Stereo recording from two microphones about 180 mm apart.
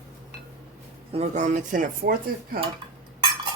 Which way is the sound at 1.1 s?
40° right (ahead or behind).